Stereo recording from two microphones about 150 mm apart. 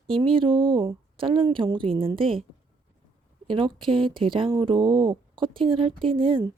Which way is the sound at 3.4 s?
35° right (ahead or behind).